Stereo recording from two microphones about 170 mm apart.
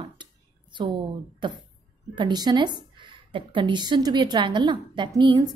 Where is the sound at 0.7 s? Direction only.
30° right (ahead or behind).